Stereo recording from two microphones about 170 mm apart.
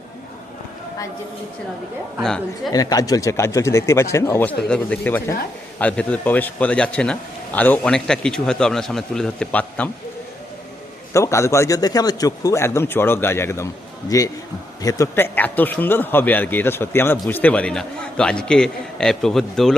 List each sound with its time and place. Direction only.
2.7 s a man's voice: 20° left (ahead or behind)
11.1 s a man's voice: 15° left (ahead or behind); by 19.7 s centre (ahead or behind)